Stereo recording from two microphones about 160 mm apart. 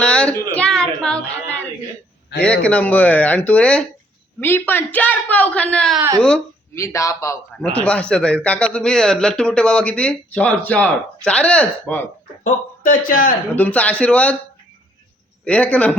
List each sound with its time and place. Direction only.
0.0 s a sound: 5° left (ahead or behind)
0.5 s a woman's voice: 5° left (ahead or behind)
6.0 s speech: 20° right (ahead or behind)
6.7 s a man's voice: 20° left (ahead or behind)
7.5 s a man's voice: 5° left (ahead or behind)
12.4 s speech: 55° left (ahead or behind)
13.5 s a man's voice: 10° left (ahead or behind)
15.4 s a man's voice: 10° left (ahead or behind)